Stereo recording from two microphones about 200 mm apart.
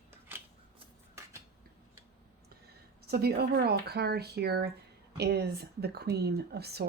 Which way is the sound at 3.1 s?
50° right (ahead or behind).